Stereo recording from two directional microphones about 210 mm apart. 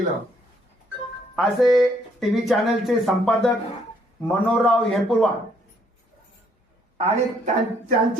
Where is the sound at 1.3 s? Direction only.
Centre (ahead or behind).